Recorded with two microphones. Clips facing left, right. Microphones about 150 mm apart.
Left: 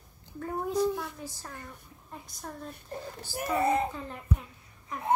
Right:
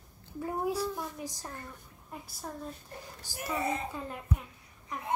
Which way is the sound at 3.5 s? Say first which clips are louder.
Left 6 dB; 55° left (ahead or behind).